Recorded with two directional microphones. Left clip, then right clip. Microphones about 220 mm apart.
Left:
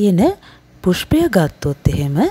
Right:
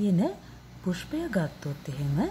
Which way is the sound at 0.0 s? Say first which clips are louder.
Left 14 dB; 40° left (ahead or behind).